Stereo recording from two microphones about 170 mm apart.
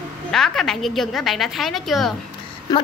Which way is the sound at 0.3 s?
Centre (ahead or behind).